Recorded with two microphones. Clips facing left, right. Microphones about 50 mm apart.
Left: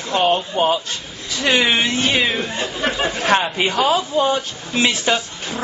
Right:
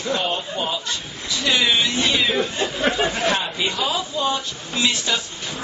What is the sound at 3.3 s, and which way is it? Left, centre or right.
Speech, left.